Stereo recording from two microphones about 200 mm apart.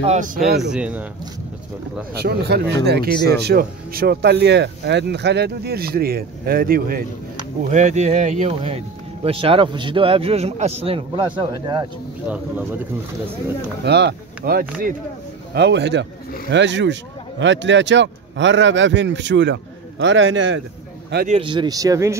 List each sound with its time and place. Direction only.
0.0 s speech: 40° right (ahead or behind)
0.6 s speech: 5° right (ahead or behind)
2.1 s speech: 55° right (ahead or behind)
7.7 s speech: 35° right (ahead or behind)
12.3 s speech: 10° right (ahead or behind)
13.8 s speech: 55° right (ahead or behind)
15.5 s speech: 55° right (ahead or behind)
21.3 s speech: 25° right (ahead or behind)